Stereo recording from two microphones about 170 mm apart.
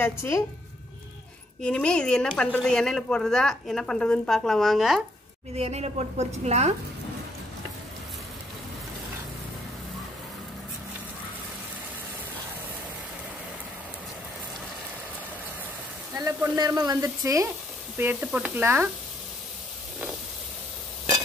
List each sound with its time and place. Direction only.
0.0 s a woman's voice: 15° left (ahead or behind)
1.6 s speech: 5° left (ahead or behind)
5.6 s a woman's voice: 40° right (ahead or behind)
16.1 s speech: 20° right (ahead or behind)
17.9 s sizzle: 10° right (ahead or behind)